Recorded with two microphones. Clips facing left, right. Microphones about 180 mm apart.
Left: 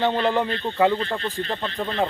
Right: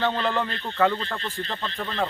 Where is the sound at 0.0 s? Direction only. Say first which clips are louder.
Left 4 dB; 20° left (ahead or behind).